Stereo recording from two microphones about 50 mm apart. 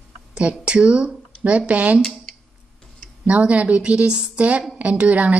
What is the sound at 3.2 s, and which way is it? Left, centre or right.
A woman's voice, right.